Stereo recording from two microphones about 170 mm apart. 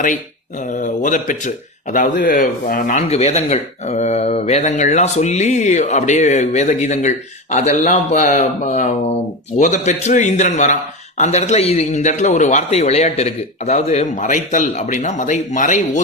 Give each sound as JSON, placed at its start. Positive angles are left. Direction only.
{"t": 0.6, "sound": "a man's voice", "side_deg": 50}
{"t": 3.1, "sound": "a man's voice", "side_deg": 40}